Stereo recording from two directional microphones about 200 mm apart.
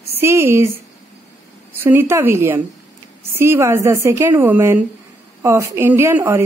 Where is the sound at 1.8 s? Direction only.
10° right (ahead or behind).